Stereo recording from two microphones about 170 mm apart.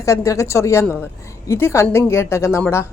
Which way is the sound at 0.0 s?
15° left (ahead or behind).